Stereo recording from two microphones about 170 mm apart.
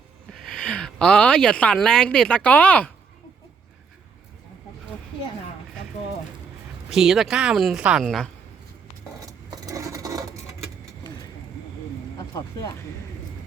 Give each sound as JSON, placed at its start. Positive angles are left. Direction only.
{"t": 0.3, "sound": "a woman's voice", "side_deg": 5}
{"t": 6.9, "sound": "a woman's voice", "side_deg": 0}
{"t": 9.2, "sound": "a sound", "side_deg": -20}